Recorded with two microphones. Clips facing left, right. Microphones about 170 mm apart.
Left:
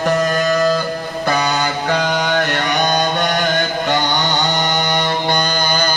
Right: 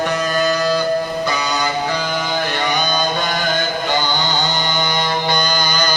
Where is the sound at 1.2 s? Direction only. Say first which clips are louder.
Left 3 dB; 55° left (ahead or behind).